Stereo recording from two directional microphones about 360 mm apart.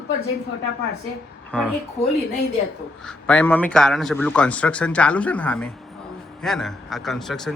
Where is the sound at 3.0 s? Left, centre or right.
Centre.